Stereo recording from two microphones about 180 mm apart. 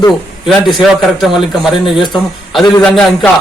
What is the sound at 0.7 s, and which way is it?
A man's voice, centre (ahead or behind).